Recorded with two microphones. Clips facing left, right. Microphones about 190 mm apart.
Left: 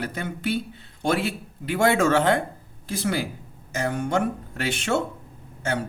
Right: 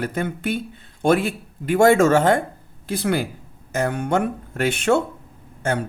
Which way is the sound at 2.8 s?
60° right (ahead or behind).